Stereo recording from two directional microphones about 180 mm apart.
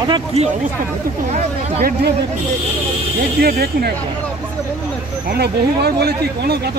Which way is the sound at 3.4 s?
60° right (ahead or behind).